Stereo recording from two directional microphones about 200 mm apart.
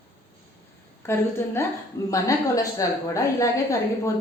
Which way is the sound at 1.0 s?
10° left (ahead or behind).